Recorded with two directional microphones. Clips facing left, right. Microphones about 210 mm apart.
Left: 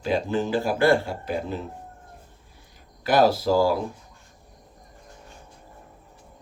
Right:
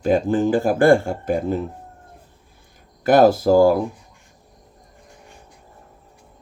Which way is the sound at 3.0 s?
50° right (ahead or behind).